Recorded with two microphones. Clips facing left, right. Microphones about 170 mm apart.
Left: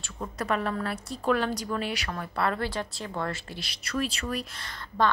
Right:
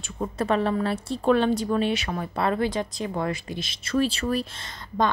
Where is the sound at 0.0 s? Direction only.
25° right (ahead or behind).